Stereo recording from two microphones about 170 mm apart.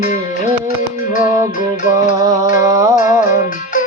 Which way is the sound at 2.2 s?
20° right (ahead or behind).